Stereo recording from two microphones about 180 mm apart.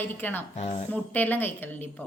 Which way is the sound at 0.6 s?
40° left (ahead or behind).